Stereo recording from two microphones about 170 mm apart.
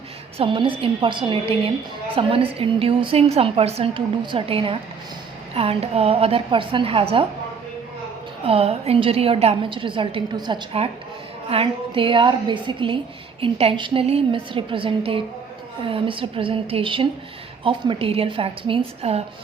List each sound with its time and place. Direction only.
0.3 s a woman's voice: 30° right (ahead or behind)
8.4 s a woman's voice: 35° right (ahead or behind)